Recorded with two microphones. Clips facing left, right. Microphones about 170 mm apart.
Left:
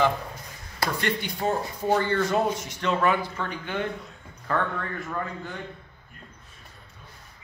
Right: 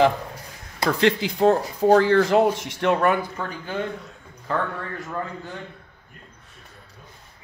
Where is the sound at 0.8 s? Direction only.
90° right; by 3.2 s 55° right (ahead or behind).